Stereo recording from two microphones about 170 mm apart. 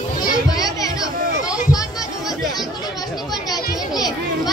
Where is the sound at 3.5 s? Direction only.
25° left (ahead or behind).